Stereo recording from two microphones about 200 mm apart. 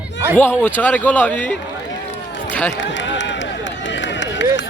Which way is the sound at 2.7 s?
65° left (ahead or behind).